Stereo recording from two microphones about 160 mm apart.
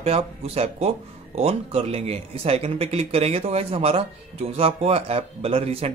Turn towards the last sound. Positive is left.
turn(degrees=-35)  # may be behind; listen again after turning